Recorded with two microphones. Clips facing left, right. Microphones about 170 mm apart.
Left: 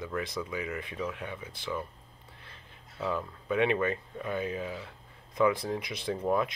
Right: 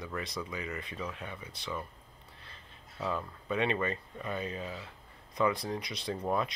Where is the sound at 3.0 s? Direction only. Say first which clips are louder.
Left 2 dB; centre (ahead or behind).